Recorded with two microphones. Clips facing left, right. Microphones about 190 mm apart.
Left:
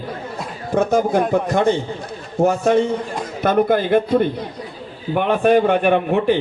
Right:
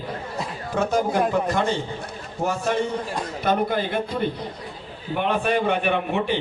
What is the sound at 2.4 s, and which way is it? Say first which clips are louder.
A man's voice: left 8 dB; 55° left (ahead or behind).